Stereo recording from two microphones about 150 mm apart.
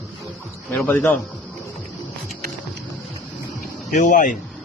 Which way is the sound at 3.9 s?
60° left (ahead or behind).